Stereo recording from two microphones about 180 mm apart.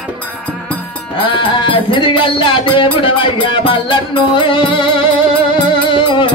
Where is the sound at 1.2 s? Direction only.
25° left (ahead or behind).